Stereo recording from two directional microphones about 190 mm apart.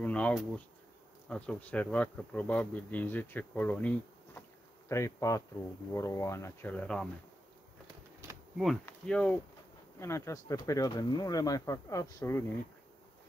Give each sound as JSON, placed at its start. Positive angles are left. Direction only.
{"t": 0.0, "sound": "speech", "side_deg": 5}
{"t": 8.8, "sound": "speech", "side_deg": 5}